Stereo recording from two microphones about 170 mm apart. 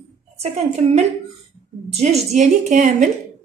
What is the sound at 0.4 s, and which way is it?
A woman's voice, 40° right (ahead or behind).